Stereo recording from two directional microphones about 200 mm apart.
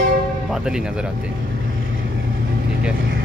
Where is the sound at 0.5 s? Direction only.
5° right (ahead or behind).